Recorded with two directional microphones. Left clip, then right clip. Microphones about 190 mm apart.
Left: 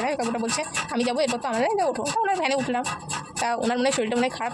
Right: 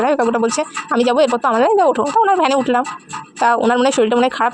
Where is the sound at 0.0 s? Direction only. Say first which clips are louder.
Right 11 dB; 35° right (ahead or behind).